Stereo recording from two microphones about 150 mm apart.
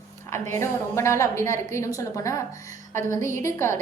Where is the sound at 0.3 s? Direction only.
15° left (ahead or behind).